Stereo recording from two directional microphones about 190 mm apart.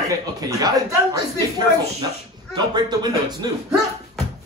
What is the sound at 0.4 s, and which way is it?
Speech, 20° right (ahead or behind).